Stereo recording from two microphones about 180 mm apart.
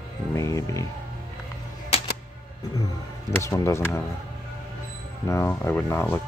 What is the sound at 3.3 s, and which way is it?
Speech, 15° left (ahead or behind).